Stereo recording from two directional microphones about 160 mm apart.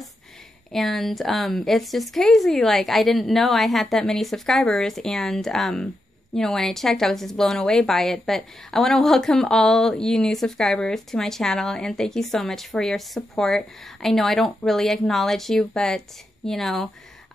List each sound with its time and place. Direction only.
0.7 s a woman's voice: centre (ahead or behind)